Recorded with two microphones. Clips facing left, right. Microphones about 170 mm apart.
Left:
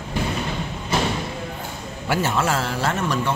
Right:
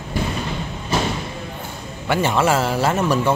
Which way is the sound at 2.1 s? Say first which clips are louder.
Right 4 dB; 5° left (ahead or behind).